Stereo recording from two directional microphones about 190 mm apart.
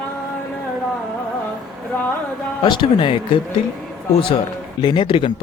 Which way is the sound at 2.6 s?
25° left (ahead or behind).